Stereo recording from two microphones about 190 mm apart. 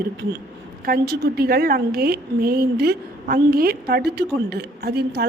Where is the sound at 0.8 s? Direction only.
55° right (ahead or behind).